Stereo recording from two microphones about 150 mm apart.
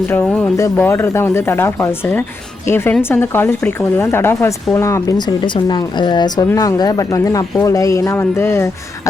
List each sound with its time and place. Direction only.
0.1 s speech: 10° left (ahead or behind)
0.5 s speech: 20° left (ahead or behind)